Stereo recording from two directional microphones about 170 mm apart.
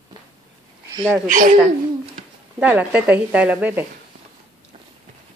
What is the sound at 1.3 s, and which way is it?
Speech, 50° right (ahead or behind).